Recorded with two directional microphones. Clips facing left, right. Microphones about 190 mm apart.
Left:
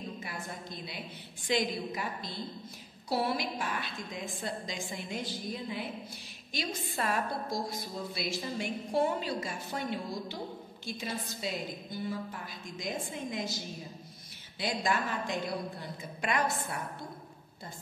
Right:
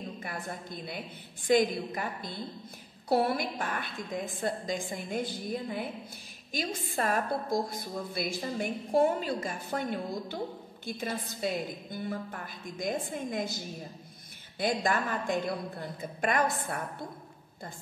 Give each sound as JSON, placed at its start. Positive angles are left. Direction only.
{"t": 0.2, "sound": "a woman's voice", "side_deg": -50}
{"t": 14.6, "sound": "a woman's voice", "side_deg": -50}